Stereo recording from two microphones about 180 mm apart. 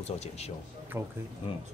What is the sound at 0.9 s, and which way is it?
Speech, 10° right (ahead or behind).